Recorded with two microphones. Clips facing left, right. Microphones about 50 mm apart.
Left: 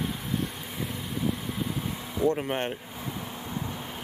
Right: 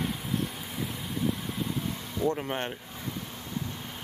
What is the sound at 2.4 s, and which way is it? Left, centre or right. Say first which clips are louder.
Speech: left 3 dB; centre.